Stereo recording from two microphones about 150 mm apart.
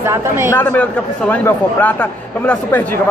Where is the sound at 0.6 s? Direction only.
10° left (ahead or behind).